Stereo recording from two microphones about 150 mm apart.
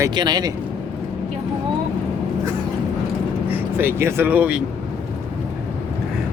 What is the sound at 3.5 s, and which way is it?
Speech, 15° right (ahead or behind).